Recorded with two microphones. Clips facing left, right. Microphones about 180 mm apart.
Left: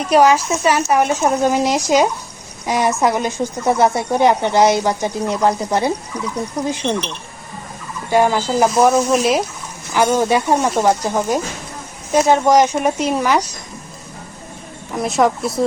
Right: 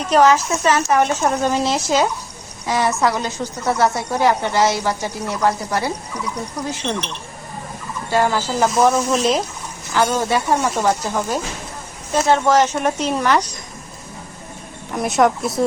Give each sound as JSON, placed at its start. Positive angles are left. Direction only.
{"t": 0.1, "sound": "a woman's voice", "side_deg": 10}
{"t": 8.1, "sound": "speech", "side_deg": 15}
{"t": 14.9, "sound": "speech", "side_deg": 0}